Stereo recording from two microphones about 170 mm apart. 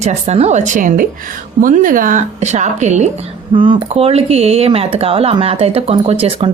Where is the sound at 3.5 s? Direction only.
30° right (ahead or behind).